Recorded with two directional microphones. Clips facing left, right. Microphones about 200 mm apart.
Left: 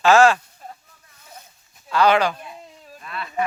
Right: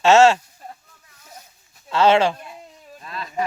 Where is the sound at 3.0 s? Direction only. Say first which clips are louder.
Even; 35° right (ahead or behind).